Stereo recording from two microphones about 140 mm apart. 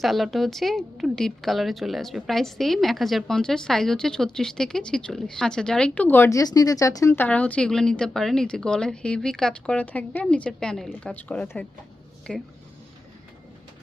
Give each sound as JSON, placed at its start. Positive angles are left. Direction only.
{"t": 0.0, "sound": "speech", "side_deg": 0}